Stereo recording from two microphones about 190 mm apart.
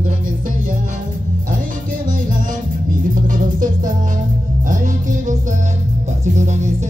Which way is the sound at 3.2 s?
45° right (ahead or behind).